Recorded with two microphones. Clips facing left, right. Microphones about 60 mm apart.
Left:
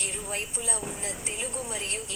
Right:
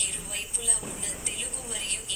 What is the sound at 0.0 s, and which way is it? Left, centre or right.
A woman's voice, left.